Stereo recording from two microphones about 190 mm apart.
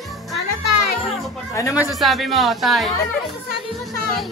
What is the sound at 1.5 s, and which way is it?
Speech, 15° left (ahead or behind).